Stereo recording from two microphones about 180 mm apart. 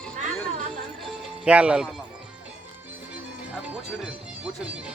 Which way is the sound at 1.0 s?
5° right (ahead or behind).